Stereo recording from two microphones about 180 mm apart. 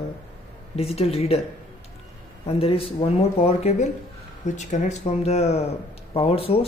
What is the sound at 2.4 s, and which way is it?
Speech, 30° left (ahead or behind).